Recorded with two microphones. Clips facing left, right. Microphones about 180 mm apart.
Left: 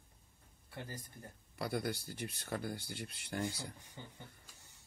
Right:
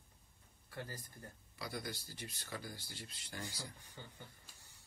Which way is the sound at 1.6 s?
60° left (ahead or behind).